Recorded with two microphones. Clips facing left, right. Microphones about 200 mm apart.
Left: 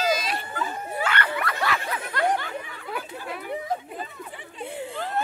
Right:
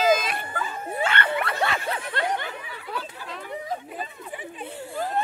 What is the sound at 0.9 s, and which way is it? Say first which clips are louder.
Snicker: right 2 dB; 25° right (ahead or behind).